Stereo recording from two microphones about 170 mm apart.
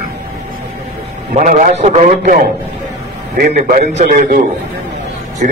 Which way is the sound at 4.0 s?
50° right (ahead or behind).